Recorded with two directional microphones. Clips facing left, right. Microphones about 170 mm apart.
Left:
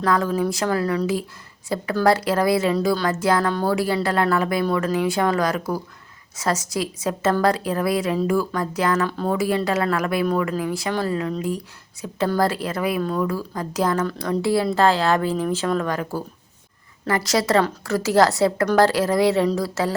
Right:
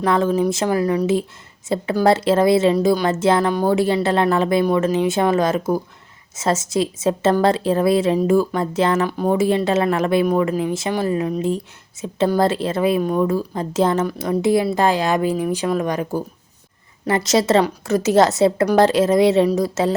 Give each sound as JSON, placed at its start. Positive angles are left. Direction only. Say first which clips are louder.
{"t": 0.0, "sound": "a woman's voice", "louder": "right 3 dB", "side_deg": -25}
{"t": 9.0, "sound": "a woman's voice", "louder": "right 4 dB", "side_deg": -15}